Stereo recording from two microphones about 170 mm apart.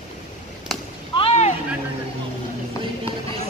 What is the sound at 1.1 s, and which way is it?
Vehicle, 35° left (ahead or behind).